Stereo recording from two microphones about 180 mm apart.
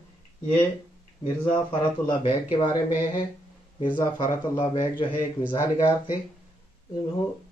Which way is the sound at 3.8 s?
20° left (ahead or behind).